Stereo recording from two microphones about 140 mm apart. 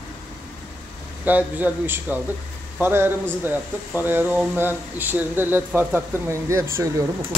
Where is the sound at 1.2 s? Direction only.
10° right (ahead or behind).